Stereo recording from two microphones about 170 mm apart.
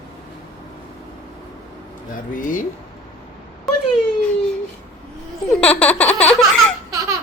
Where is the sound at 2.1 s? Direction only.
55° left (ahead or behind).